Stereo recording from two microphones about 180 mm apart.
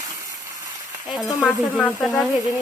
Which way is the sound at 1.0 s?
Centre (ahead or behind).